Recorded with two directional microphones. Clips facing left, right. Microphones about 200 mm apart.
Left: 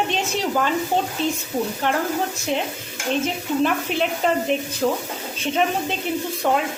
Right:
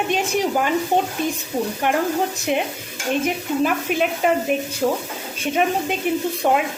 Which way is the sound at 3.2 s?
10° right (ahead or behind).